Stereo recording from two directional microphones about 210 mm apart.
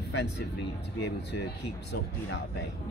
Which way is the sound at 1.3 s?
55° left (ahead or behind).